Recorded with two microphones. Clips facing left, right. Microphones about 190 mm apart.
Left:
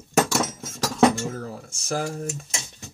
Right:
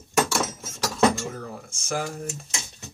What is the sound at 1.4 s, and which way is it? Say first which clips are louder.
Speech: left 2 dB; 40° left (ahead or behind).